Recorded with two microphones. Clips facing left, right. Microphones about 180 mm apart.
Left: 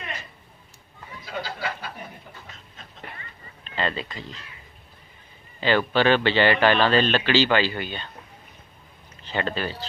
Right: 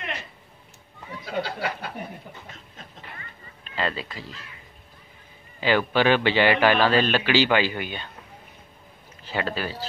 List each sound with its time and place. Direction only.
1.2 s a sound: 60° right (ahead or behind)
3.6 s speech: 5° right (ahead or behind)
5.6 s a man's voice: 10° right (ahead or behind)
9.2 s speech: 5° right (ahead or behind)